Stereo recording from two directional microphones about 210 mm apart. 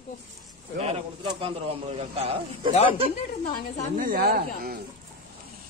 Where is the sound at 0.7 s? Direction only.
30° right (ahead or behind).